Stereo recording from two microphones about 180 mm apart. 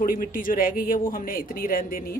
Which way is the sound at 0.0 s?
50° left (ahead or behind).